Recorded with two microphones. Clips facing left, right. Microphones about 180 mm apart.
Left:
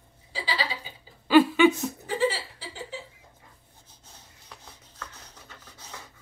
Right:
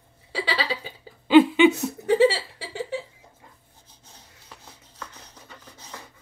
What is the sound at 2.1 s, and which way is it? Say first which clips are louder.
Laughter: right 9 dB; 75° right (ahead or behind).